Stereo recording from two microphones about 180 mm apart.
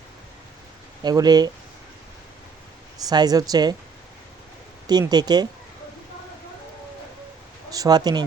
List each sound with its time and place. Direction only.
1.0 s speech: 20° right (ahead or behind)
3.1 s speech: 20° right (ahead or behind)
4.9 s speech: 20° right (ahead or behind)
7.7 s speech: 20° right (ahead or behind)